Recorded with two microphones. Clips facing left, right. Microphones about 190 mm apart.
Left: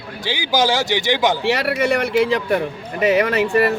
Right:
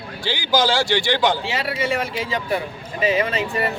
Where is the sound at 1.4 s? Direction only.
65° left (ahead or behind).